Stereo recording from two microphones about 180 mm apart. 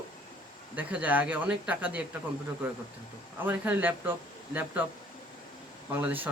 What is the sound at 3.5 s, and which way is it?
Speech, 10° right (ahead or behind).